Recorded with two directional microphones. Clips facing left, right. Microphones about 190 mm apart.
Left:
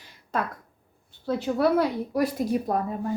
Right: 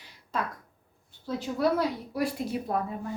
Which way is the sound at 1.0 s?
65° left (ahead or behind).